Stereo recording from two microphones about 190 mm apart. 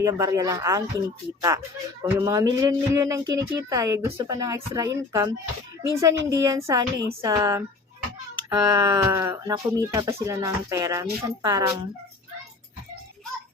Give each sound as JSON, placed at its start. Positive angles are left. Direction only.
{"t": 0.0, "sound": "speech", "side_deg": -15}